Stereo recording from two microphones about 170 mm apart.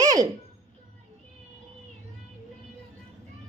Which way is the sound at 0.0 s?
20° right (ahead or behind).